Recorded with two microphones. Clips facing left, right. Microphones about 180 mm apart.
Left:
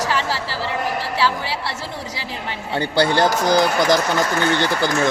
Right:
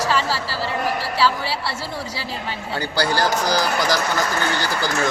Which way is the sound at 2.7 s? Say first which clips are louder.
Left 4 dB; 25° left (ahead or behind).